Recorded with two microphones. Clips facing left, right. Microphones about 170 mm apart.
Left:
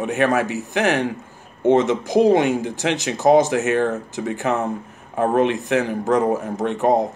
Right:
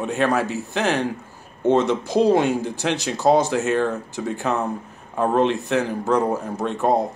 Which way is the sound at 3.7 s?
55° left (ahead or behind).